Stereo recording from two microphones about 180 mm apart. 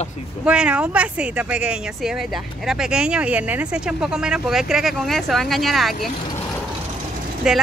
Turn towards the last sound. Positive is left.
turn(degrees=-5)  # may be behind; listen again after turning